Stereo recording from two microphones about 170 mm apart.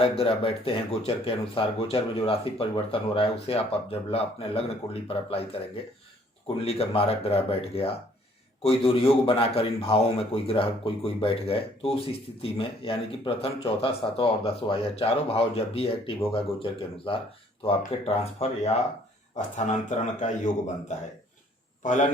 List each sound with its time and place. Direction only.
0.0 s a man's voice: 35° left (ahead or behind)